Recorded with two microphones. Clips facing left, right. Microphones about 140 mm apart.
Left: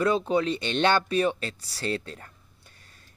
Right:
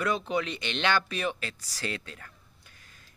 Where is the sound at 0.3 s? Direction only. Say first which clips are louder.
Left 6 dB; 30° left (ahead or behind).